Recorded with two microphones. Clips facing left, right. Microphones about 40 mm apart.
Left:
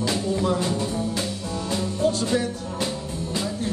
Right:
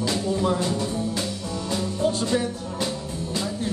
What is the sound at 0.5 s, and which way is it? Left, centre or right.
Music, centre.